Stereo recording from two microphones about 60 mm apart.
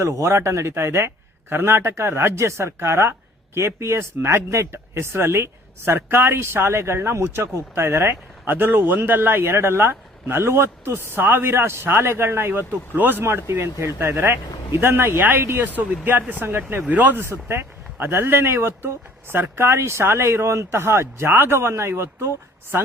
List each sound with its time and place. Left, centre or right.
0.0 s a man's voice: right
13.2 s a man's voice: right
17.2 s a man's voice: right